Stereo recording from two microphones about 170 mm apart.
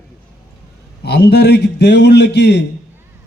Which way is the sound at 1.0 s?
75° left (ahead or behind).